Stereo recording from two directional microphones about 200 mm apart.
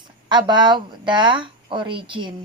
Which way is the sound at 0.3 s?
20° right (ahead or behind).